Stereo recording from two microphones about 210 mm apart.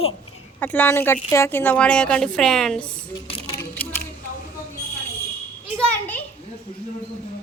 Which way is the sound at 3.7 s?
10° left (ahead or behind).